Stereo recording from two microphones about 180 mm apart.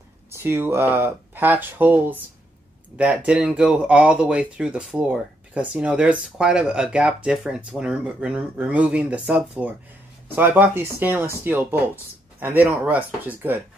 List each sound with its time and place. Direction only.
0.3 s speech: 15° right (ahead or behind)